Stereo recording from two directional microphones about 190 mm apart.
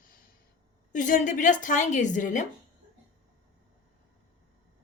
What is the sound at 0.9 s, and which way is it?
A woman's voice, 45° left (ahead or behind).